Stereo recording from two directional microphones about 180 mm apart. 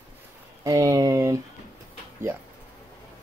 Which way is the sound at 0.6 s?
20° right (ahead or behind).